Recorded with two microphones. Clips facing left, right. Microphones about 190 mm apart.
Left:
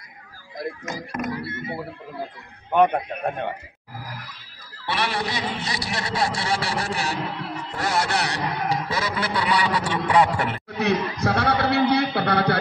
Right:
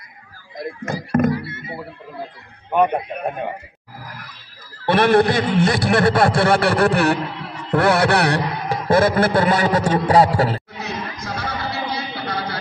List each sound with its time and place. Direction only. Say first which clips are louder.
0.8 s a man's voice: right 15 dB; 55° right (ahead or behind)
2.7 s a man's voice: right 1 dB; 5° right (ahead or behind)
4.8 s a man's voice: right 12 dB; 50° right (ahead or behind)
7.7 s music: right 9 dB; 60° right (ahead or behind); by 10.6 s 35° right (ahead or behind)
10.8 s a sound: left 7 dB; 65° left (ahead or behind)